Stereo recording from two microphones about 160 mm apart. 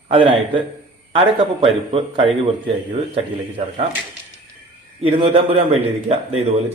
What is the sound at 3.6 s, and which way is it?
Speech, 45° right (ahead or behind).